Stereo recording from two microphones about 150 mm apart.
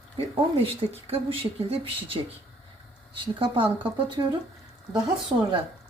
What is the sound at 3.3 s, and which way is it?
Speech, 35° right (ahead or behind).